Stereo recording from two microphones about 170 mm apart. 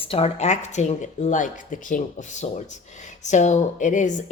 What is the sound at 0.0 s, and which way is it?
Speech, 35° left (ahead or behind).